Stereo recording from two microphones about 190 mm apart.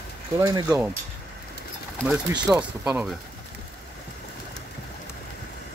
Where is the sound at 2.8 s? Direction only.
10° right (ahead or behind).